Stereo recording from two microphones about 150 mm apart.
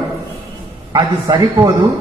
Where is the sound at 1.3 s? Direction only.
25° right (ahead or behind).